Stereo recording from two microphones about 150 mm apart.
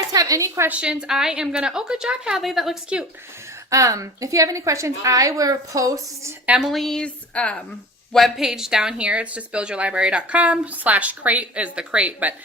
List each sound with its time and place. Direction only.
0.1 s a woman's voice: 25° right (ahead or behind)
0.7 s a woman's voice: 5° right (ahead or behind)
3.7 s a woman's voice: 20° right (ahead or behind)
6.6 s a woman's voice: centre (ahead or behind)